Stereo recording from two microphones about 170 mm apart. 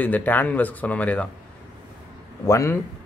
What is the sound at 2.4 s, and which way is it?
Speech, 15° left (ahead or behind).